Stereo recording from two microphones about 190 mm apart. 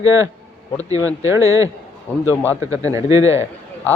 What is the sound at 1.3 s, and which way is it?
Speech, 15° right (ahead or behind).